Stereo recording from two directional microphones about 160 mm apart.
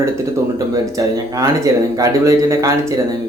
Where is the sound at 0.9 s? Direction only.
20° right (ahead or behind).